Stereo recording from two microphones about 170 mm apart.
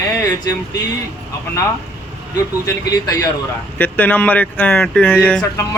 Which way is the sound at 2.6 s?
20° left (ahead or behind).